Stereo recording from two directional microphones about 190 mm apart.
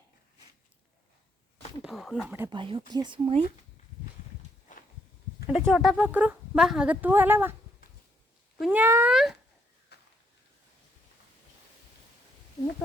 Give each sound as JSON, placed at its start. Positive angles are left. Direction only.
{"t": 1.8, "sound": "speech", "side_deg": 0}
{"t": 2.5, "sound": "speech", "side_deg": -25}
{"t": 4.7, "sound": "a sound", "side_deg": 45}
{"t": 5.5, "sound": "speech", "side_deg": -5}
{"t": 8.5, "sound": "speech", "side_deg": -5}
{"t": 9.9, "sound": "a sound", "side_deg": 60}